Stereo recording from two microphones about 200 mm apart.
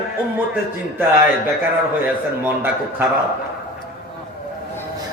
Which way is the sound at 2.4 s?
10° right (ahead or behind).